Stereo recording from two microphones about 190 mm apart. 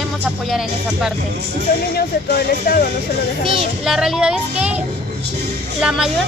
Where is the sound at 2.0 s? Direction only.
55° left (ahead or behind).